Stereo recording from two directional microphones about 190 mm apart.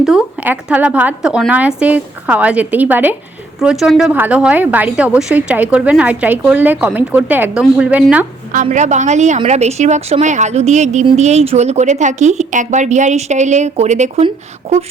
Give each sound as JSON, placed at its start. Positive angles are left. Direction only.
{"t": 0.0, "sound": "a woman's voice", "side_deg": -5}
{"t": 8.6, "sound": "a woman's voice", "side_deg": -40}